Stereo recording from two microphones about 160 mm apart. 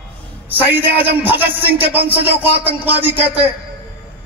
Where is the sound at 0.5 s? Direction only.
10° right (ahead or behind).